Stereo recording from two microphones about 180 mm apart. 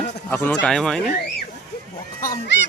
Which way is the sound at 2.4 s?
75° left (ahead or behind).